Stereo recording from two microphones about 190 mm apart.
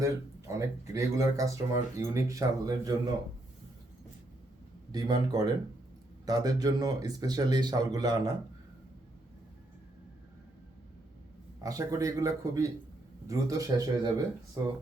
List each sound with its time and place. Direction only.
0.0 s speech: 15° right (ahead or behind)
4.9 s speech: 20° right (ahead or behind)
11.6 s speech: 15° right (ahead or behind)